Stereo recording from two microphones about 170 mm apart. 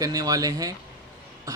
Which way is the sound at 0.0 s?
20° right (ahead or behind).